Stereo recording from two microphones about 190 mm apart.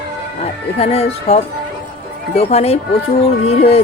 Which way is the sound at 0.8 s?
35° left (ahead or behind).